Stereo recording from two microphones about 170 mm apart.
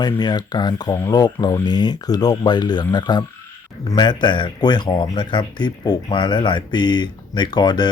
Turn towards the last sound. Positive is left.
turn(degrees=25)  # may be behind; listen again after turning